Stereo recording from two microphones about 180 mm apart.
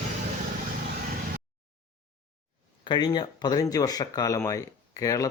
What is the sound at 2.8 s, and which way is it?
Speech, 25° left (ahead or behind).